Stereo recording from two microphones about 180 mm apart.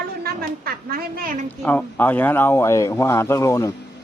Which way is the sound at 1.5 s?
10° left (ahead or behind).